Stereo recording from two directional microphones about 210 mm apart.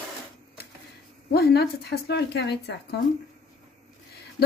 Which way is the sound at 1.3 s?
50° left (ahead or behind).